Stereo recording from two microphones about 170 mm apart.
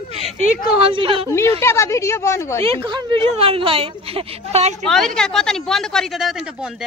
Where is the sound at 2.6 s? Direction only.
30° right (ahead or behind).